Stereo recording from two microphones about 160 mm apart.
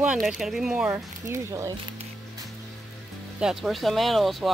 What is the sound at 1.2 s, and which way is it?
Speech, 20° right (ahead or behind).